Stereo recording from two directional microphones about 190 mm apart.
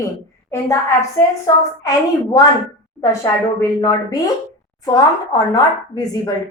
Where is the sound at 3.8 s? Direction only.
20° left (ahead or behind).